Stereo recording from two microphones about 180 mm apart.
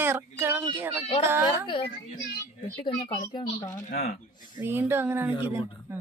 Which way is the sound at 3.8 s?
55° left (ahead or behind).